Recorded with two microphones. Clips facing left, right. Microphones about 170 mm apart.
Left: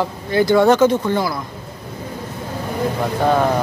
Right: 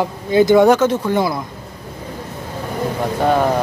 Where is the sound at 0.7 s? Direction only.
5° right (ahead or behind).